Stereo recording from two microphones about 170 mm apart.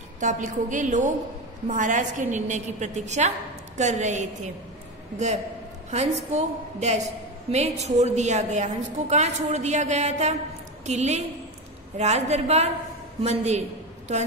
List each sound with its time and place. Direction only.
0.2 s a woman's voice: 45° right (ahead or behind)
5.9 s a woman's voice: 45° right (ahead or behind)